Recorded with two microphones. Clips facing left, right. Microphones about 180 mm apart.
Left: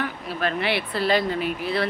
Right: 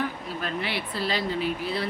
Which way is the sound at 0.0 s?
70° left (ahead or behind).